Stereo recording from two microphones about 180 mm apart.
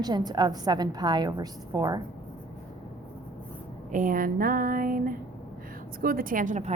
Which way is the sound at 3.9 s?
50° right (ahead or behind).